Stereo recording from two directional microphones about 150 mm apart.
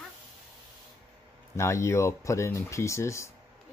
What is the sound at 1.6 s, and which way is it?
Speech, 20° left (ahead or behind).